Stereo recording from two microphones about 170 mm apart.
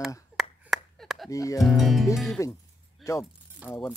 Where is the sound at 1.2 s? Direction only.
20° left (ahead or behind).